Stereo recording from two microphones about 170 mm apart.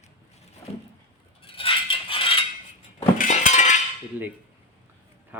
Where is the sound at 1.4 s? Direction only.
30° left (ahead or behind).